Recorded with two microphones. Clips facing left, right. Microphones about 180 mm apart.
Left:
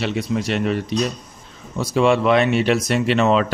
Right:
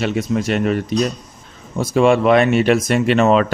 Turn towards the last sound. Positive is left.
turn(degrees=-50)  # may be behind; listen again after turning